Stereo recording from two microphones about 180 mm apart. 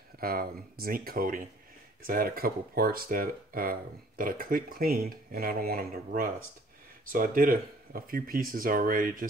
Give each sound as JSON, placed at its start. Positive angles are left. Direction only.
{"t": 0.2, "sound": "speech", "side_deg": -55}